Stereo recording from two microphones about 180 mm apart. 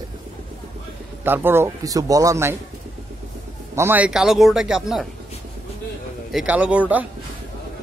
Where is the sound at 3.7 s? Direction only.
10° right (ahead or behind).